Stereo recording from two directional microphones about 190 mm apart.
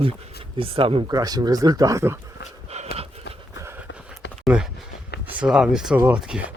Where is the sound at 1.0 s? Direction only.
20° right (ahead or behind).